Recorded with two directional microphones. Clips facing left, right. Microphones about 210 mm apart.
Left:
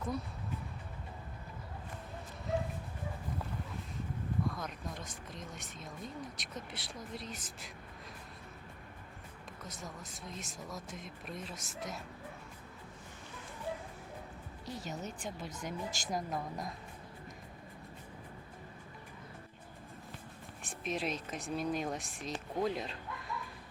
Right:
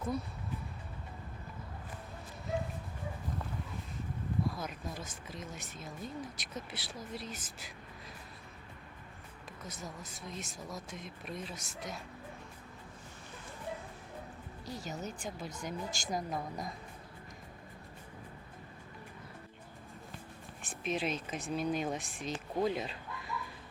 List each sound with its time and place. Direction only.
4.4 s speech: 5° right (ahead or behind)
9.6 s speech: centre (ahead or behind)
14.6 s speech: centre (ahead or behind)
20.6 s speech: centre (ahead or behind)